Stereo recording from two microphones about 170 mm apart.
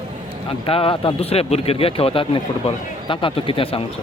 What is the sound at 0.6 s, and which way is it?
Speech, 35° left (ahead or behind).